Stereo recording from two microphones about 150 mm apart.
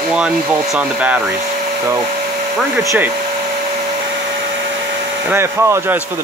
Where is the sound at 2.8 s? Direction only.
20° right (ahead or behind).